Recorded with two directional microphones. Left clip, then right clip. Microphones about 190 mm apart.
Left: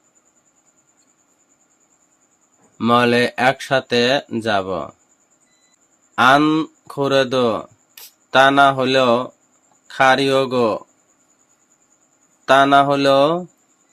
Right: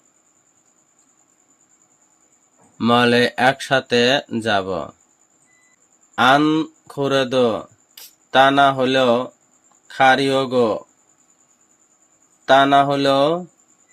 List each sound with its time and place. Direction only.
2.7 s speech: centre (ahead or behind)
6.1 s speech: 15° left (ahead or behind)
12.5 s speech: 15° left (ahead or behind)